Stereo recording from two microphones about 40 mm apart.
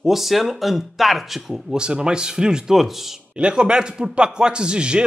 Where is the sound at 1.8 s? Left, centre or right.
Right.